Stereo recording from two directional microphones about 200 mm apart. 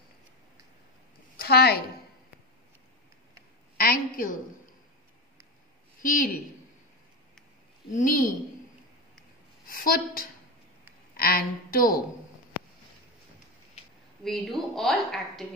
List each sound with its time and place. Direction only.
1.3 s a woman's voice: 50° left (ahead or behind)
3.7 s a woman's voice: 45° left (ahead or behind)
6.0 s a woman's voice: 45° left (ahead or behind)
7.9 s a woman's voice: 40° left (ahead or behind)
9.7 s a woman's voice: 45° left (ahead or behind)
14.2 s a woman's voice: centre (ahead or behind)